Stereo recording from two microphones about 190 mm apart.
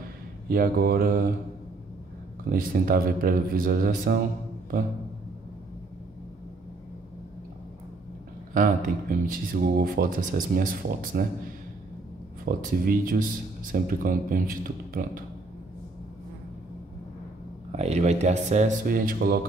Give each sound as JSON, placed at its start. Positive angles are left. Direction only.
{"t": 0.5, "sound": "speech", "side_deg": -55}
{"t": 2.5, "sound": "speech", "side_deg": -50}
{"t": 8.5, "sound": "speech", "side_deg": -45}
{"t": 12.4, "sound": "speech", "side_deg": -50}
{"t": 17.7, "sound": "speech", "side_deg": -35}